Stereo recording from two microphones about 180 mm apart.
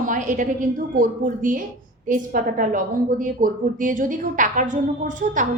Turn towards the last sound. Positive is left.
turn(degrees=-45)  # may be behind; listen again after turning